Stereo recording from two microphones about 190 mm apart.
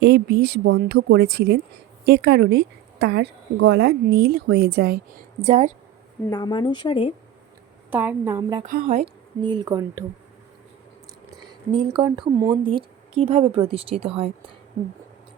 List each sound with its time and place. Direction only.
0.0 s a woman's voice: 60° right (ahead or behind)
5.4 s a woman's voice: 35° right (ahead or behind)
6.3 s speech: 20° left (ahead or behind)
7.9 s a woman's voice: 10° right (ahead or behind)
8.6 s speech: 50° right (ahead or behind)
9.4 s a woman's voice: 20° right (ahead or behind)
11.3 s a woman's voice: 25° right (ahead or behind)